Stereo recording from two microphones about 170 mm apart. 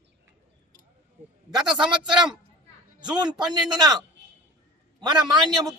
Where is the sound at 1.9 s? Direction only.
25° right (ahead or behind).